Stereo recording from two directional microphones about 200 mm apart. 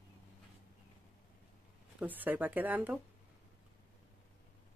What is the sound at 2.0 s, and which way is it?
Speech, 10° right (ahead or behind).